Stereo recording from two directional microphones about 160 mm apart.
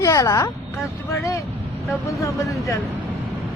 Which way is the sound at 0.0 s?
20° left (ahead or behind).